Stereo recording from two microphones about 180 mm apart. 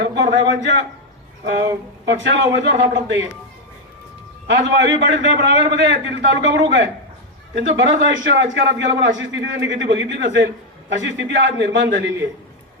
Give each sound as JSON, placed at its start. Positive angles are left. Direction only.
{"t": 0.0, "sound": "a man's voice", "side_deg": -75}
{"t": 2.0, "sound": "a man's voice", "side_deg": -90}
{"t": 4.4, "sound": "a man's voice", "side_deg": -80}
{"t": 8.5, "sound": "a man's voice", "side_deg": -75}